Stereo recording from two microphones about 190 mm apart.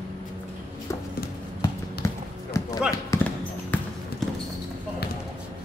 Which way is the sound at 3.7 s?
10° left (ahead or behind).